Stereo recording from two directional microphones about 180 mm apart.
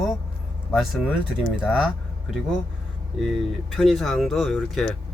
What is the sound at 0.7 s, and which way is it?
Speech, centre (ahead or behind).